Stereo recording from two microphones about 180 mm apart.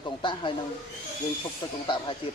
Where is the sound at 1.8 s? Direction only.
25° left (ahead or behind).